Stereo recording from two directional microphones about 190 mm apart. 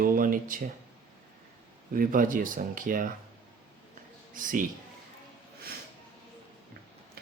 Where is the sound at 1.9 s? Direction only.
45° right (ahead or behind).